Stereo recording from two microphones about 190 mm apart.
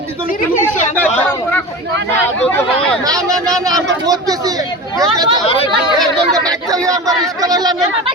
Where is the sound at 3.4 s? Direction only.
20° right (ahead or behind).